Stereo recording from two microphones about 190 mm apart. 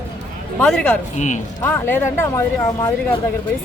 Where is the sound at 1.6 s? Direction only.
10° left (ahead or behind).